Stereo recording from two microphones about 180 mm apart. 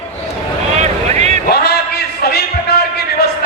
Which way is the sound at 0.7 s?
40° right (ahead or behind).